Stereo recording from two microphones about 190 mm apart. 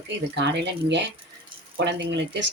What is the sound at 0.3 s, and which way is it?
Speech, 65° right (ahead or behind).